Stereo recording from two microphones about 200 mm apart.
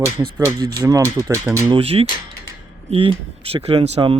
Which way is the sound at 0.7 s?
15° right (ahead or behind).